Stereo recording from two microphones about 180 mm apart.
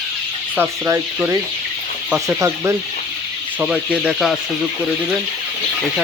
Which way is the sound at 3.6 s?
5° right (ahead or behind).